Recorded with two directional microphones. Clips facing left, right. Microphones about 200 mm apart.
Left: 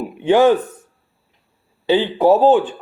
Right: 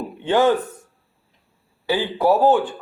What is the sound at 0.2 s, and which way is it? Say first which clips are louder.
Speech: left 5 dB; 15° left (ahead or behind).